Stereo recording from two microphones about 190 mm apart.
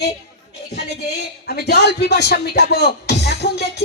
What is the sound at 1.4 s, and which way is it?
Speech, 55° left (ahead or behind).